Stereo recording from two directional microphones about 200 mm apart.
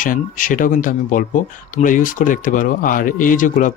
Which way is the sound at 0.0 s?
40° left (ahead or behind).